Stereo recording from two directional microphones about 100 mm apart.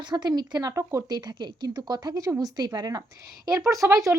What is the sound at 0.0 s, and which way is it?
Speech, 45° right (ahead or behind).